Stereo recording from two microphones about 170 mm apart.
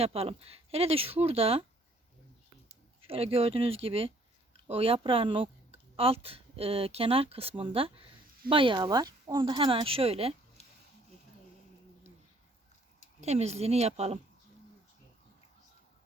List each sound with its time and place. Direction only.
0.0 s speech: 35° right (ahead or behind)
2.6 s speech: 35° right (ahead or behind)
10.6 s a sound: 40° left (ahead or behind)
13.2 s speech: 40° right (ahead or behind)